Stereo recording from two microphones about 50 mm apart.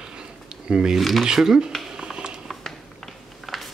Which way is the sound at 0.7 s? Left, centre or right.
Centre.